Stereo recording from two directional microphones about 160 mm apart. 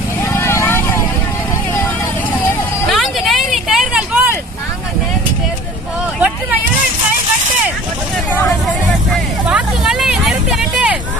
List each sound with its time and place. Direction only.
0.2 s vehicle: 15° left (ahead or behind)
2.9 s vehicle: centre (ahead or behind)
6.1 s hubbub: 10° right (ahead or behind)
9.5 s hubbub: 5° right (ahead or behind)